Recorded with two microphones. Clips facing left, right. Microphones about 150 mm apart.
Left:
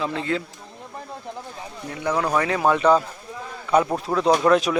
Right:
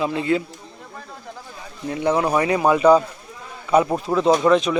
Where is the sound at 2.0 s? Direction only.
25° right (ahead or behind).